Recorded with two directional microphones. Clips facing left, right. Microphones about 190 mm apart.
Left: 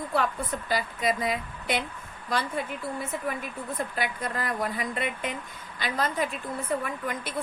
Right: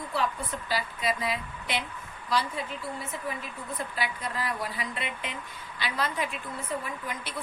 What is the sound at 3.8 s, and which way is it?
A woman's voice, 50° left (ahead or behind).